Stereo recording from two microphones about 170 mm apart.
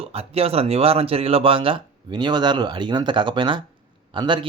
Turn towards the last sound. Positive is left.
turn(degrees=-30)  # may be behind; listen again after turning